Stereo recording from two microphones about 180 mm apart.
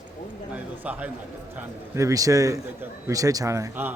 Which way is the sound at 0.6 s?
10° right (ahead or behind).